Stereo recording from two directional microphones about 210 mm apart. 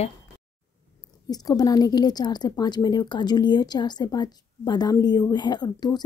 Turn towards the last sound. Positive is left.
turn(degrees=20)  # may be behind; listen again after turning